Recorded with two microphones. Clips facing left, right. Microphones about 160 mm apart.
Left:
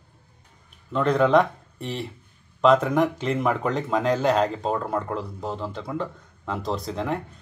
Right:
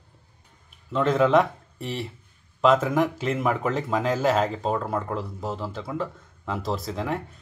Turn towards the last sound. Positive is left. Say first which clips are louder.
# left 1 dB
turn(degrees=0)  # may be behind; listen again after turning